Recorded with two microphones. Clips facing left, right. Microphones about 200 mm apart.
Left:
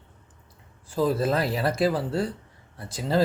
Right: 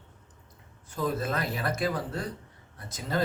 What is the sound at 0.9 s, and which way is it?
Speech, 30° left (ahead or behind).